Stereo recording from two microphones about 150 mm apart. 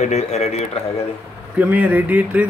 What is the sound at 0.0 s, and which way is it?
Speech, 50° left (ahead or behind).